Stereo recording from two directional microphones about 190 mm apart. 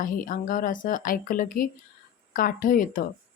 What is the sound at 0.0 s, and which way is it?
A woman's voice, 45° left (ahead or behind).